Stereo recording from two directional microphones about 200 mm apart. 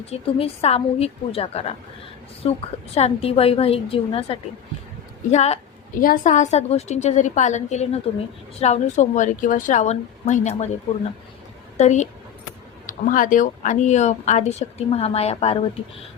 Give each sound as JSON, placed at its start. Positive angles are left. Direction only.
{"t": 0.1, "sound": "a woman's voice", "side_deg": 30}
{"t": 11.8, "sound": "speech", "side_deg": 35}